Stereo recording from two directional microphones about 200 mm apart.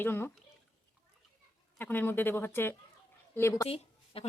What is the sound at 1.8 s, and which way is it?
Speech, 10° left (ahead or behind).